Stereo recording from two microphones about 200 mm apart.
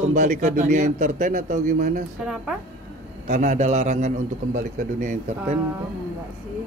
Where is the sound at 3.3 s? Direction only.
35° right (ahead or behind).